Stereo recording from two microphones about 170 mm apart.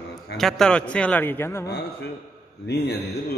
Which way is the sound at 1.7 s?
75° left (ahead or behind).